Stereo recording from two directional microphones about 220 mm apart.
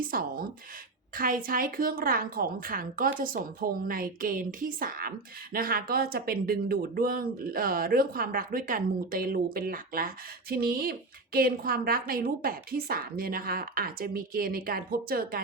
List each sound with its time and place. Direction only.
0.0 s a woman's voice: 40° right (ahead or behind)